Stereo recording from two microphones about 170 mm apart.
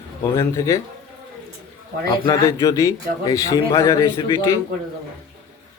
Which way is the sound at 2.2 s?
20° left (ahead or behind).